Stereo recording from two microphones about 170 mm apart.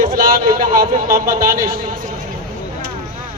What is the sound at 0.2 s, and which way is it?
A man's voice, 60° right (ahead or behind).